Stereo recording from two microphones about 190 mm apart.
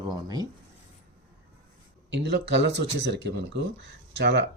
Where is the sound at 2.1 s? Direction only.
65° right (ahead or behind).